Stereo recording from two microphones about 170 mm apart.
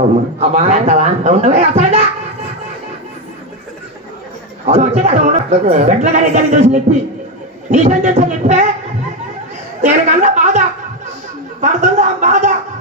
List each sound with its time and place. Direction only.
0.4 s speech: 40° right (ahead or behind)
4.6 s a woman's voice: 40° right (ahead or behind)
9.8 s a woman's voice: 45° right (ahead or behind)
11.6 s a sound: 45° right (ahead or behind)